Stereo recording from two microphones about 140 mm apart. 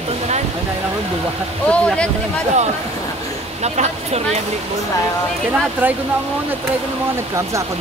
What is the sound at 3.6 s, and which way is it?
Speech, 50° right (ahead or behind).